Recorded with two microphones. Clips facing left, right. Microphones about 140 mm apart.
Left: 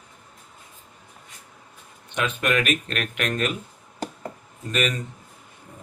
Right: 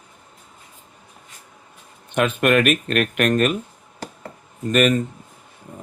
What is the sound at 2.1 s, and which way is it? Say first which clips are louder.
Speech: right 7 dB; 55° right (ahead or behind).